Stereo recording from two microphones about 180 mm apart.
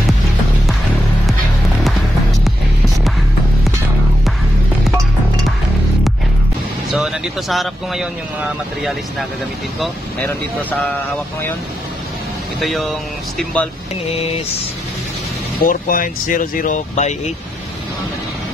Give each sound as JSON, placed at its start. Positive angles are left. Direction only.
{"t": 6.9, "sound": "speech", "side_deg": 0}
{"t": 10.2, "sound": "speech", "side_deg": 10}
{"t": 12.5, "sound": "speech", "side_deg": 0}
{"t": 15.6, "sound": "speech", "side_deg": 50}